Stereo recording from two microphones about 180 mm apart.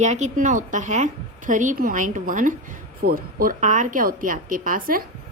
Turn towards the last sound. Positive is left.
turn(degrees=-50)  # may be behind; listen again after turning